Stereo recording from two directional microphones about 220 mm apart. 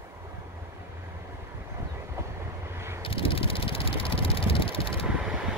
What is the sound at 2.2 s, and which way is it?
Train, 10° right (ahead or behind).